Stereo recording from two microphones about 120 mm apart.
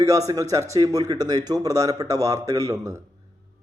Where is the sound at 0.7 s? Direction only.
30° right (ahead or behind).